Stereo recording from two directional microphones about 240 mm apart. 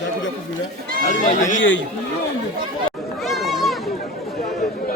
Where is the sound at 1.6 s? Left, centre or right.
Left.